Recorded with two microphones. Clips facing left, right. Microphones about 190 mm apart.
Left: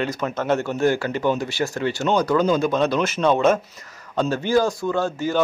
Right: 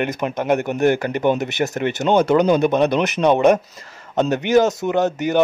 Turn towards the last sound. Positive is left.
turn(degrees=-20)  # may be behind; listen again after turning